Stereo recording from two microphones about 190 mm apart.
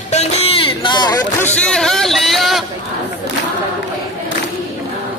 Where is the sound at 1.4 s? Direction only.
5° left (ahead or behind).